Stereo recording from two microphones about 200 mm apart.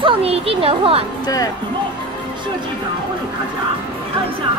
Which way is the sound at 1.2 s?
20° left (ahead or behind).